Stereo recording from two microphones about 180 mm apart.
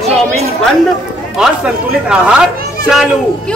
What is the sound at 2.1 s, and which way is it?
Speech, 5° right (ahead or behind).